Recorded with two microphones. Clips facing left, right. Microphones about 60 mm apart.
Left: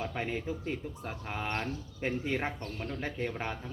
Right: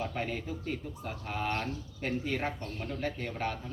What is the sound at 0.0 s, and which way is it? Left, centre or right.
Speech, centre.